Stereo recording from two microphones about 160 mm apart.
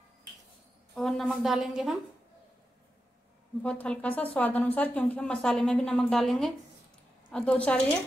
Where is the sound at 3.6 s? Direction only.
5° left (ahead or behind).